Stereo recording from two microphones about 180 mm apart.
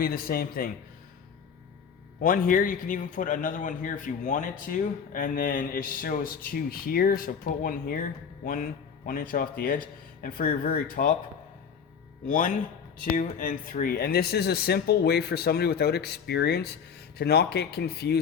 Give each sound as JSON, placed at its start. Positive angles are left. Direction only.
{"t": 0.0, "sound": "speech", "side_deg": 55}
{"t": 2.2, "sound": "a man's voice", "side_deg": 50}
{"t": 9.0, "sound": "a man's voice", "side_deg": 50}
{"t": 13.1, "sound": "speech", "side_deg": 45}